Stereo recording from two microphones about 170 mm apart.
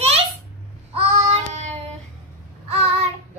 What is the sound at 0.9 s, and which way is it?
Child singing, 35° right (ahead or behind).